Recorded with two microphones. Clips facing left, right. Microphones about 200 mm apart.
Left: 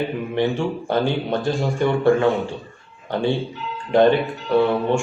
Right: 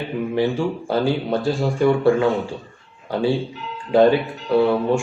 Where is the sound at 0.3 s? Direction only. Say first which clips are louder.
Even; 5° right (ahead or behind).